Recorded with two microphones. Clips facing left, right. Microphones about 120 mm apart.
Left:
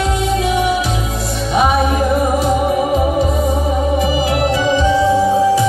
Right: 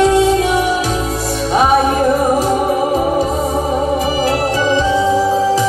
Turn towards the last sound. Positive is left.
turn(degrees=15)  # may be behind; listen again after turning